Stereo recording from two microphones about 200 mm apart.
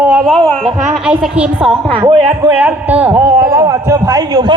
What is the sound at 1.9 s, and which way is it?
Speech, 25° right (ahead or behind).